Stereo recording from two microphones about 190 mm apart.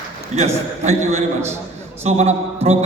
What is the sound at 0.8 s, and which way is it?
A man's voice, 35° right (ahead or behind).